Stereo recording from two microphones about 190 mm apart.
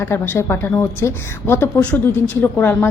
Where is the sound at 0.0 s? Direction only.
10° left (ahead or behind).